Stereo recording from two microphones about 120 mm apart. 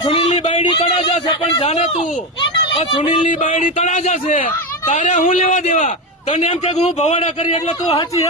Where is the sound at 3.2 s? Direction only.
90° left.